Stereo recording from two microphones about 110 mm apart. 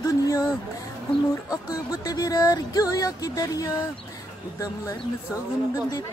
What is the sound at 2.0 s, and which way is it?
Music, 35° left (ahead or behind).